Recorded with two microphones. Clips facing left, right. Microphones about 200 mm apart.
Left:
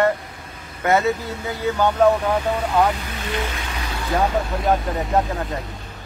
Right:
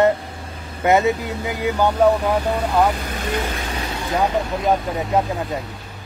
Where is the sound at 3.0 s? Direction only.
45° right (ahead or behind).